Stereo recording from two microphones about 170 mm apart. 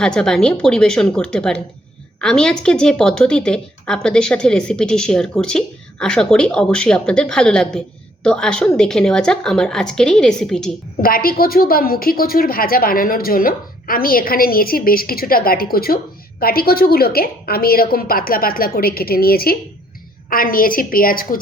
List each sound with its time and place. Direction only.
0.0 s a woman's voice: 5° left (ahead or behind)
11.0 s a woman's voice: 60° left (ahead or behind)